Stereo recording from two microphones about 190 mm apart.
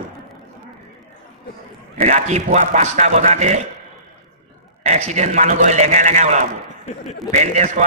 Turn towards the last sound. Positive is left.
turn(degrees=-40)  # may be behind; listen again after turning